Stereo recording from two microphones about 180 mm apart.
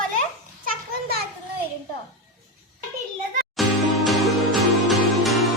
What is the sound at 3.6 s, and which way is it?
Music, centre (ahead or behind).